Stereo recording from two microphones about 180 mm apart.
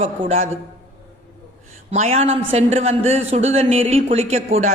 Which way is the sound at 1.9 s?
35° right (ahead or behind).